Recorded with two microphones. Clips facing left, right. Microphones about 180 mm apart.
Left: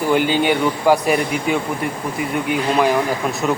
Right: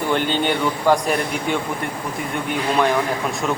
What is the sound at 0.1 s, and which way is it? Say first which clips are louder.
Speech: left 4 dB; 10° left (ahead or behind).